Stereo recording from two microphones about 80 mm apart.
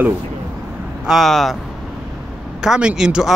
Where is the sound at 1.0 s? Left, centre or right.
Centre.